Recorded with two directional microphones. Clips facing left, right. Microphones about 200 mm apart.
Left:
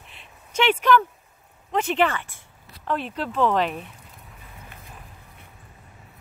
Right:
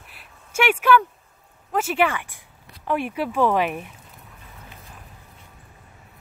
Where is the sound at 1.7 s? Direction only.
5° right (ahead or behind).